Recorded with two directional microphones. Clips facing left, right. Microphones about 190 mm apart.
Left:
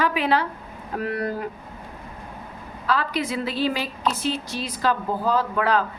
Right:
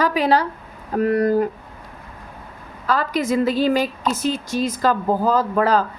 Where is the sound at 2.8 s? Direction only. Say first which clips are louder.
Right 4 dB; 45° right (ahead or behind).